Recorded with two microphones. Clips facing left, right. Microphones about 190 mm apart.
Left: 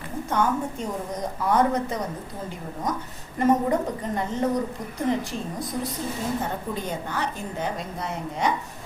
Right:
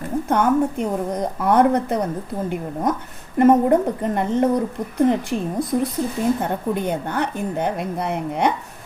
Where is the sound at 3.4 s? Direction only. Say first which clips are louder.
Right 7 dB; 60° right (ahead or behind).